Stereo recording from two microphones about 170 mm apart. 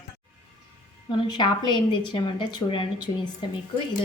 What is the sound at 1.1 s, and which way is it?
A woman's voice, 25° left (ahead or behind).